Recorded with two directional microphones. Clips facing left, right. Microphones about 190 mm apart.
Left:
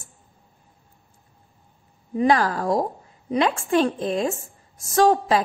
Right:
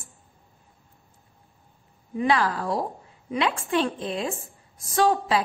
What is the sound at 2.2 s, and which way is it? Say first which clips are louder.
A woman's voice: left 4 dB; 40° left (ahead or behind).